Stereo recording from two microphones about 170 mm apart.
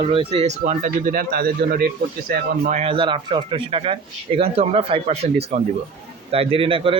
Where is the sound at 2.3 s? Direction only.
45° right (ahead or behind).